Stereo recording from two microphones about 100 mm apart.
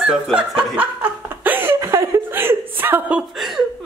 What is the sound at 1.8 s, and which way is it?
Chuckle, 30° right (ahead or behind).